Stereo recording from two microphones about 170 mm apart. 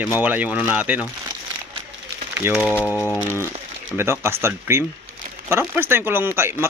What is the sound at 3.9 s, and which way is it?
Speech, 15° right (ahead or behind).